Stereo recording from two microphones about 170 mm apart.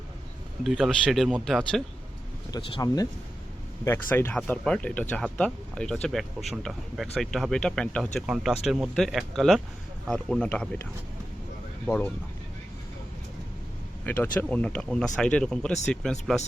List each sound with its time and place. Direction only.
0.6 s speech: centre (ahead or behind)
2.5 s speech: 25° left (ahead or behind); by 10.8 s 5° left (ahead or behind)
11.9 s speech: 10° left (ahead or behind)
14.0 s speech: 10° left (ahead or behind)